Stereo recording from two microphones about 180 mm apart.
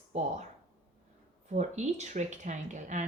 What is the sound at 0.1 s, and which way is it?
Speech, 35° right (ahead or behind).